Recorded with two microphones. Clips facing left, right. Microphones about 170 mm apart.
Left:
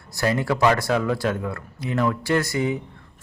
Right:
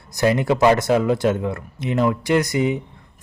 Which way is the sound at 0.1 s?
20° right (ahead or behind).